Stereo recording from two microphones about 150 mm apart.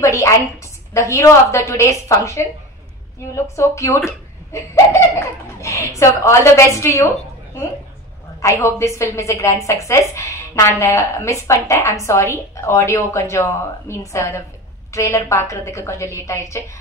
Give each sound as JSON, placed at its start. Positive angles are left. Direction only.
{"t": 0.0, "sound": "a woman's voice", "side_deg": 20}
{"t": 8.4, "sound": "a woman's voice", "side_deg": 20}